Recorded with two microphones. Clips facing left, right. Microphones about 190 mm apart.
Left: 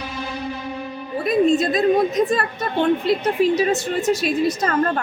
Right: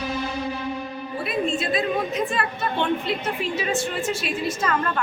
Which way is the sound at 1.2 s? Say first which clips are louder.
Left 9 dB; 40° left (ahead or behind).